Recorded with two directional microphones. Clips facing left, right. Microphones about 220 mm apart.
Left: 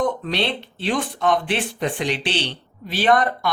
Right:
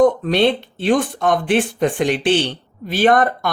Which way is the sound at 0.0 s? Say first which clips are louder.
Right 9 dB; 50° right (ahead or behind).